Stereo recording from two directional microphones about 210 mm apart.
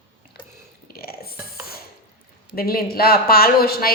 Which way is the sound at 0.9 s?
45° left (ahead or behind).